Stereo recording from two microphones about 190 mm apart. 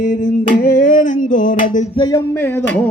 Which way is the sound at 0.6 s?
45° left (ahead or behind).